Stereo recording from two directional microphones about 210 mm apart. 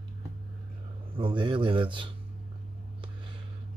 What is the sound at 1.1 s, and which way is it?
Speech, 25° right (ahead or behind).